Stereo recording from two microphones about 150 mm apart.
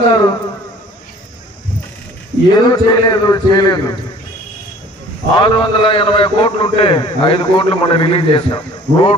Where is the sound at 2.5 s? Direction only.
25° left (ahead or behind).